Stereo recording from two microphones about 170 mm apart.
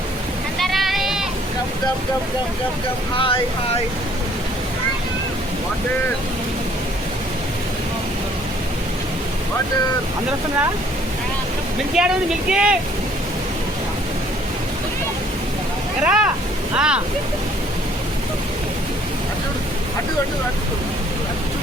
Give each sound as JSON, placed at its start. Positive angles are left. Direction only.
{"t": 0.6, "sound": "a sound", "side_deg": 0}
{"t": 3.2, "sound": "speech", "side_deg": 30}
{"t": 11.9, "sound": "speech", "side_deg": -5}
{"t": 16.0, "sound": "speech", "side_deg": -5}